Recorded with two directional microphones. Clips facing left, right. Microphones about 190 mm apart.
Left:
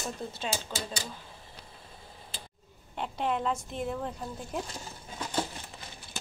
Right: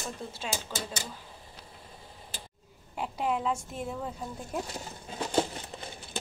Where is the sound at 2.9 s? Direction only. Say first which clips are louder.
Even; 5° right (ahead or behind).